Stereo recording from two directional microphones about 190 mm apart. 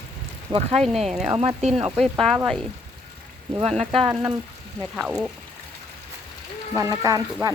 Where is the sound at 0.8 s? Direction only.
Centre (ahead or behind).